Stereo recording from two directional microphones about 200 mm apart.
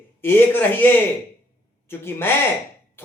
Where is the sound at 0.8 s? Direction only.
10° left (ahead or behind).